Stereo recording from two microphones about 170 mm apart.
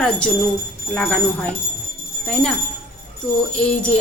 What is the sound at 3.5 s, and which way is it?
Speech, 5° left (ahead or behind).